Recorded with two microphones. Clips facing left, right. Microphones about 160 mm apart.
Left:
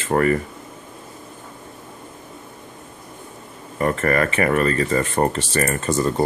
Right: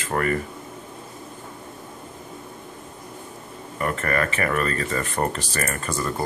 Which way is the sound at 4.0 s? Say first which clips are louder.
Left 5 dB; 40° left (ahead or behind).